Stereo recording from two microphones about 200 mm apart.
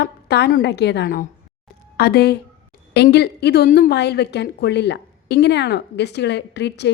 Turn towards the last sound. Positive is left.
turn(degrees=60)  # may be behind; listen again after turning